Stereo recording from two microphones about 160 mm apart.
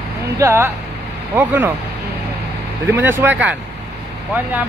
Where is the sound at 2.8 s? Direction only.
15° right (ahead or behind).